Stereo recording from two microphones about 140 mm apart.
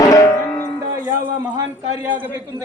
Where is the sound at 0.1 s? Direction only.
20° left (ahead or behind).